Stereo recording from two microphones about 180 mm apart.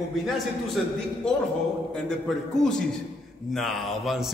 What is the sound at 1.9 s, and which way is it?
A man's voice, 5° left (ahead or behind).